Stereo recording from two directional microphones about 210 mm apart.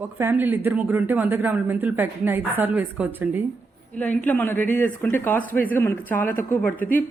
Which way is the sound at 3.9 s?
10° left (ahead or behind).